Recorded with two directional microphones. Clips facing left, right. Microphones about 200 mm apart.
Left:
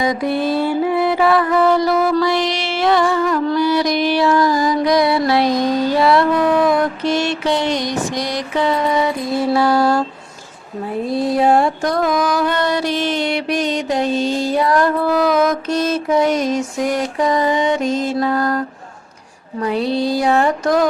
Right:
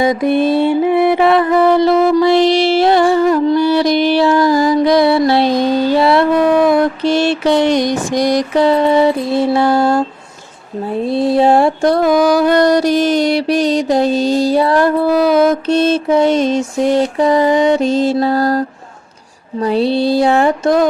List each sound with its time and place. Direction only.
0.0 s mantra: 25° right (ahead or behind)
8.2 s mantra: 45° right (ahead or behind); by 10.0 s 25° right (ahead or behind)
11.1 s music: 30° right (ahead or behind)
19.5 s mantra: 30° right (ahead or behind)